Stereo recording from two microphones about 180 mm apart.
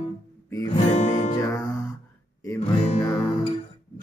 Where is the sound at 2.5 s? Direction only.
35° left (ahead or behind).